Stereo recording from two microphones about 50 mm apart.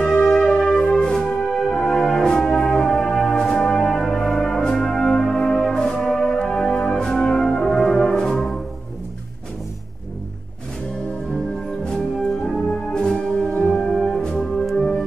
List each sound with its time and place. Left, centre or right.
0.2 s music: centre
0.8 s brass instrument: centre
11.8 s music: centre
13.5 s music: left
13.7 s music: centre